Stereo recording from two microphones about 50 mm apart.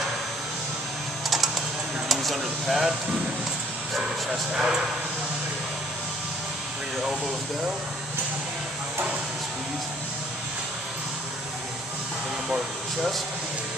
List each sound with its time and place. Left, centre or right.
2.0 s speech: centre
4.3 s speech: centre
12.4 s speech: centre